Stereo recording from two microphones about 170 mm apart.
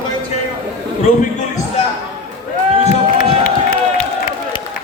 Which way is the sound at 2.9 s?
50° left (ahead or behind).